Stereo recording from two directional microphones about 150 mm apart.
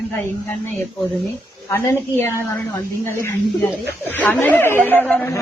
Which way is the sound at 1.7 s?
15° left (ahead or behind).